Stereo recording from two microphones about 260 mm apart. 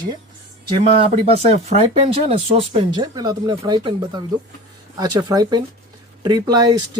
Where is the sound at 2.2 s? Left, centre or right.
Right.